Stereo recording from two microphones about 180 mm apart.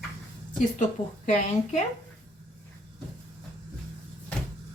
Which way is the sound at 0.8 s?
45° left (ahead or behind).